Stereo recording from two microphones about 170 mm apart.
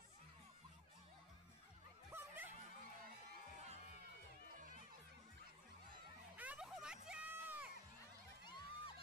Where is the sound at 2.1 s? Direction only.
10° right (ahead or behind).